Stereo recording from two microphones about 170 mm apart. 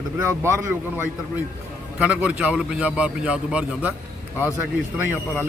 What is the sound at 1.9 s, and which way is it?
A man's voice, 5° right (ahead or behind).